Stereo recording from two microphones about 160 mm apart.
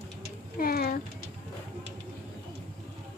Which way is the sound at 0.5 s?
70° left (ahead or behind).